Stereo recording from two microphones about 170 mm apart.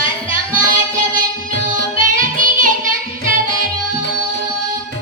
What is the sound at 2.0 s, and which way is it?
Music, 50° right (ahead or behind).